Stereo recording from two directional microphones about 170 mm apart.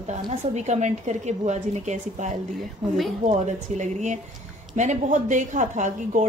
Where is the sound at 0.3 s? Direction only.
40° right (ahead or behind).